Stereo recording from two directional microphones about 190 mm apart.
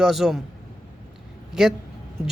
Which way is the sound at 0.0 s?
Centre (ahead or behind).